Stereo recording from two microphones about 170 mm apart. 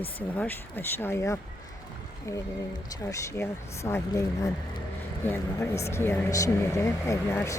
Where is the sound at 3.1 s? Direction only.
15° left (ahead or behind).